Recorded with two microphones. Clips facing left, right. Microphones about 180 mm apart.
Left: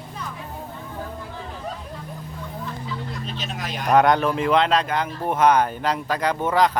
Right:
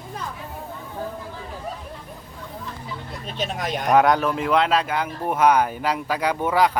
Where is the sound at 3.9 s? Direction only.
5° right (ahead or behind).